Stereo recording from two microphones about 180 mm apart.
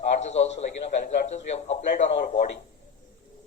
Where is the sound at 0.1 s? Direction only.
40° left (ahead or behind).